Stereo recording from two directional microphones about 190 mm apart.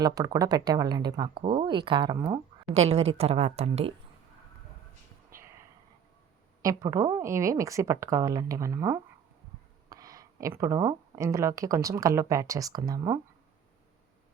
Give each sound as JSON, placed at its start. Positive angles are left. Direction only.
{"t": 0.0, "sound": "speech", "side_deg": -20}
{"t": 2.7, "sound": "speech", "side_deg": -35}
{"t": 5.3, "sound": "a sound", "side_deg": -15}
{"t": 6.6, "sound": "speech", "side_deg": -20}